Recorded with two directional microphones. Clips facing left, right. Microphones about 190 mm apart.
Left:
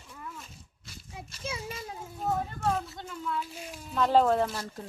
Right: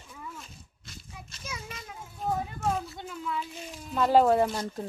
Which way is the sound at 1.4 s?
30° left (ahead or behind).